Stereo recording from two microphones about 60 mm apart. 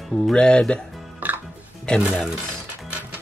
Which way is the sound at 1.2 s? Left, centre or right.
Right.